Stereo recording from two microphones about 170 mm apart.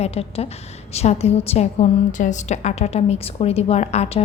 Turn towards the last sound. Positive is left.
turn(degrees=40)  # may be behind; listen again after turning